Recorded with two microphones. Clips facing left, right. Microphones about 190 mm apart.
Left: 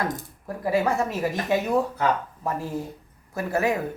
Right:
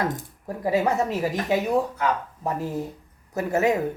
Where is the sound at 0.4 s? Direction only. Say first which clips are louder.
Right 1 dB; 20° right (ahead or behind).